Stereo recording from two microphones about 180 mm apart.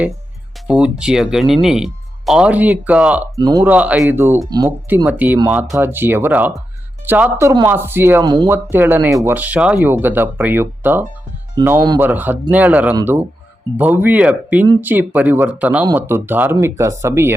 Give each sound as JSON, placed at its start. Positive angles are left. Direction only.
{"t": 0.7, "sound": "speech", "side_deg": -5}
{"t": 3.3, "sound": "speech", "side_deg": -20}
{"t": 3.6, "sound": "speech", "side_deg": -10}
{"t": 4.4, "sound": "speech", "side_deg": -25}
{"t": 5.0, "sound": "speech", "side_deg": -10}
{"t": 8.2, "sound": "speech", "side_deg": -25}
{"t": 8.7, "sound": "speech", "side_deg": -10}
{"t": 11.6, "sound": "speech", "side_deg": -25}
{"t": 11.9, "sound": "speech", "side_deg": -10}